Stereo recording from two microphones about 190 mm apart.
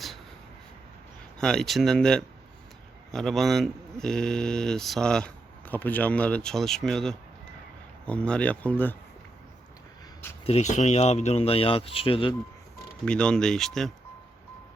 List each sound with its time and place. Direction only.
1.4 s speech: 5° left (ahead or behind)
10.4 s speech: 35° left (ahead or behind)
13.1 s speech: 5° left (ahead or behind)